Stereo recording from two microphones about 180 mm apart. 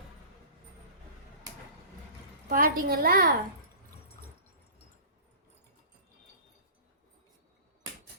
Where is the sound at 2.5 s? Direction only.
50° right (ahead or behind).